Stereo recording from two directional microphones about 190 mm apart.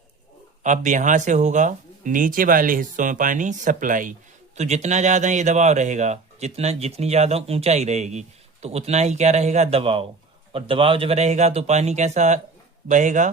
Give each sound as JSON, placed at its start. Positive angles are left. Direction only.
{"t": 0.6, "sound": "speech", "side_deg": -40}